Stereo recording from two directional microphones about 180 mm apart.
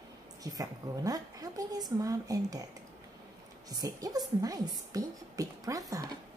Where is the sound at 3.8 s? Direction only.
20° right (ahead or behind).